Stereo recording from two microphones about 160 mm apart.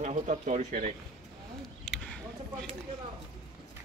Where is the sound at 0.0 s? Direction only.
50° right (ahead or behind).